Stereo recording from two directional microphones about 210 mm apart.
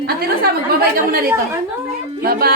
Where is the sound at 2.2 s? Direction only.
45° right (ahead or behind).